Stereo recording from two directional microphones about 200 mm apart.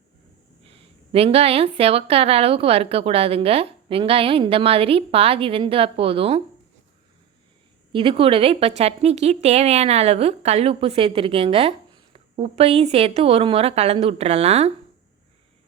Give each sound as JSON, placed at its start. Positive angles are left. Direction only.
{"t": 0.6, "sound": "speech", "side_deg": -30}
{"t": 7.9, "sound": "a woman's voice", "side_deg": -25}